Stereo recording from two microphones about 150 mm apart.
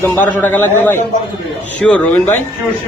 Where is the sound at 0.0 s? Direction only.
15° left (ahead or behind).